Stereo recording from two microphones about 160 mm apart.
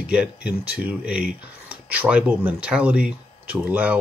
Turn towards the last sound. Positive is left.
turn(degrees=-10)  # may be behind; listen again after turning